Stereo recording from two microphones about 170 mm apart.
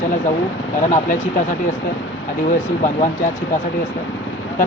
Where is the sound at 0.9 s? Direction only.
50° left (ahead or behind).